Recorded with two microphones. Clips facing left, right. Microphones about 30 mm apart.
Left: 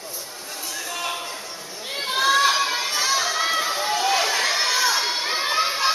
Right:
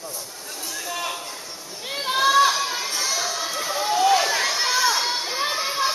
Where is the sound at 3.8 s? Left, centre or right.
Centre.